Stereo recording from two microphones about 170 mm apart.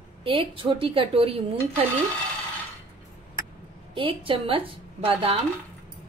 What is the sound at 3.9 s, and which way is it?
Speech, 30° right (ahead or behind).